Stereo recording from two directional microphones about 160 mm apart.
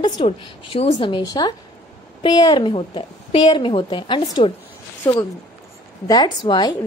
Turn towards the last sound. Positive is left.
turn(degrees=25)  # may be behind; listen again after turning